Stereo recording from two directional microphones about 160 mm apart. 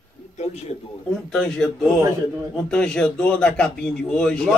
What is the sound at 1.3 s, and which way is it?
Speech, 5° left (ahead or behind).